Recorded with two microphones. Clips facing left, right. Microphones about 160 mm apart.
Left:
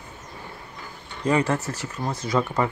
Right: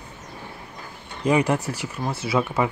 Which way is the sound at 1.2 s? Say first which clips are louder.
Right 2 dB; 10° right (ahead or behind).